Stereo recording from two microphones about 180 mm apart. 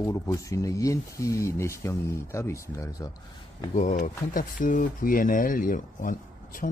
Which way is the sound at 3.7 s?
40° left (ahead or behind).